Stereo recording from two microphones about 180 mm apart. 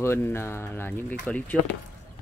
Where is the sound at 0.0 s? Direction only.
15° left (ahead or behind).